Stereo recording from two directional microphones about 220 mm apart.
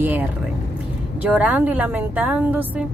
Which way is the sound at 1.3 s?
5° right (ahead or behind).